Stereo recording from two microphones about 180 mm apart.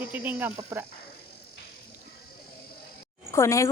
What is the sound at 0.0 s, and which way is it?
Speech, 10° right (ahead or behind).